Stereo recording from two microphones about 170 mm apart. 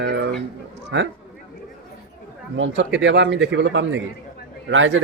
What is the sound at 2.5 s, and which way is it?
Speech, 90° right.